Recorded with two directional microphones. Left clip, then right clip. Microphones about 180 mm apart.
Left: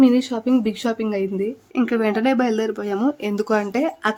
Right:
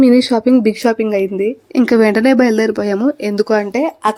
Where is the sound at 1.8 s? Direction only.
30° right (ahead or behind).